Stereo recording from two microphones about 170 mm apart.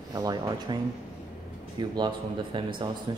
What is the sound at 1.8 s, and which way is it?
Speech, 25° right (ahead or behind).